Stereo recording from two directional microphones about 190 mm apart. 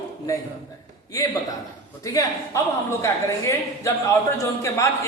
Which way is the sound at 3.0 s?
15° left (ahead or behind).